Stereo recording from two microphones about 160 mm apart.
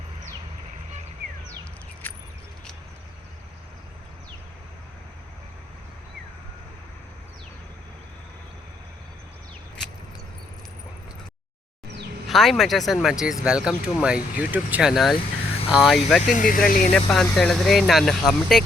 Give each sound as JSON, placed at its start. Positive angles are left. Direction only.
{"t": 12.3, "sound": "speech", "side_deg": 0}
{"t": 15.1, "sound": "vehicle", "side_deg": 35}
{"t": 15.7, "sound": "speech", "side_deg": 0}
{"t": 16.2, "sound": "speech", "side_deg": 55}
{"t": 17.3, "sound": "speech", "side_deg": 5}